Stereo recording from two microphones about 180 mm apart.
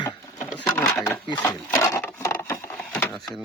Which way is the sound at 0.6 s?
20° left (ahead or behind).